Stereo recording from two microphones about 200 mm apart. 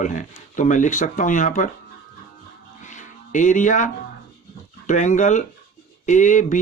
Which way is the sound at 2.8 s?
40° left (ahead or behind).